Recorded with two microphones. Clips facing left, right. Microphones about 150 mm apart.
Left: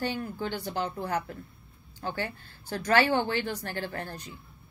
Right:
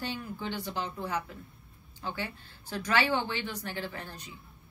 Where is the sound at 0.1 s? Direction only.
45° left (ahead or behind).